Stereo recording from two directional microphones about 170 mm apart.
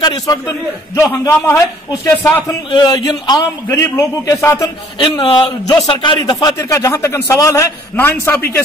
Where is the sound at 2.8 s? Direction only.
25° left (ahead or behind).